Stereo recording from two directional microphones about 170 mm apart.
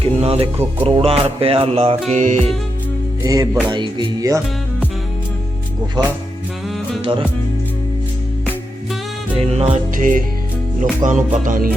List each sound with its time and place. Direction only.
0.0 s speech: 35° right (ahead or behind)
0.9 s music: 35° right (ahead or behind)
3.2 s music: 20° right (ahead or behind)
6.0 s music: 25° right (ahead or behind)
7.0 s music: 35° right (ahead or behind)
9.4 s music: 35° right (ahead or behind); by 11.7 s 55° right (ahead or behind)